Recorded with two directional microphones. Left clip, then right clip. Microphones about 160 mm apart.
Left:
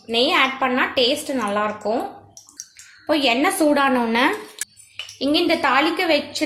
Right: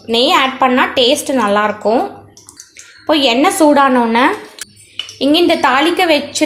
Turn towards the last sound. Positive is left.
turn(degrees=-25)  # may be behind; listen again after turning